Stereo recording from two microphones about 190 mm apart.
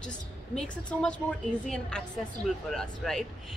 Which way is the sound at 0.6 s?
5° left (ahead or behind).